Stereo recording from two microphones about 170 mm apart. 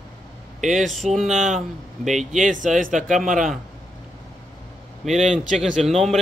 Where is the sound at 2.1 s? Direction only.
50° right (ahead or behind).